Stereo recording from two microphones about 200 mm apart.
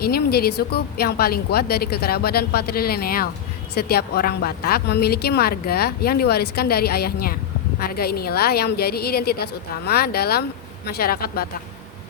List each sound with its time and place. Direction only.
0.0 s a woman's voice: 50° left (ahead or behind)